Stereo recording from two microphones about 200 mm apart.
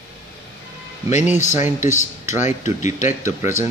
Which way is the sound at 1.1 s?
35° left (ahead or behind).